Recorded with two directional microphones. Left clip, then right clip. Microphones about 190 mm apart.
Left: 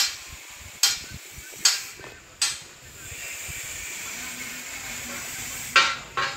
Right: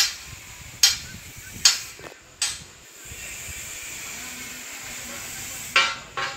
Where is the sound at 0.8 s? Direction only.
60° left (ahead or behind).